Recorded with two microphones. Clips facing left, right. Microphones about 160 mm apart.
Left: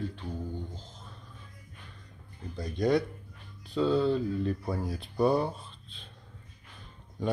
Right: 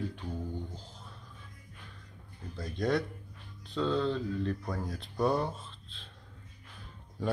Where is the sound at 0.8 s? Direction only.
5° right (ahead or behind).